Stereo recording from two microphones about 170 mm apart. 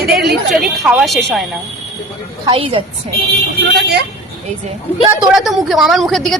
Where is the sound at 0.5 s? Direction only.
Centre (ahead or behind).